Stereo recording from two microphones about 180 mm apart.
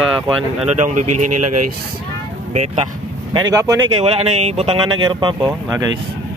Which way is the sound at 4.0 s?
35° right (ahead or behind).